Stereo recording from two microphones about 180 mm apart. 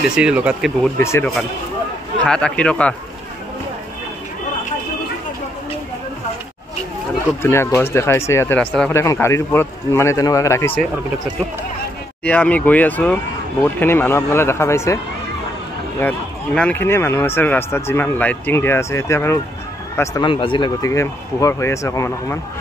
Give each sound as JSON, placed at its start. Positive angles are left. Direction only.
{"t": 0.1, "sound": "a man's voice", "side_deg": -5}
{"t": 0.9, "sound": "speech", "side_deg": 15}
{"t": 2.2, "sound": "a man's voice", "side_deg": 5}
{"t": 7.4, "sound": "speech", "side_deg": 15}
{"t": 9.0, "sound": "speech", "side_deg": 15}
{"t": 12.3, "sound": "speech", "side_deg": 10}
{"t": 16.0, "sound": "speech", "side_deg": 10}